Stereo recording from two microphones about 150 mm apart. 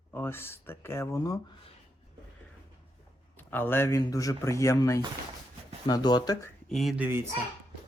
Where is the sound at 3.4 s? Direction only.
15° left (ahead or behind).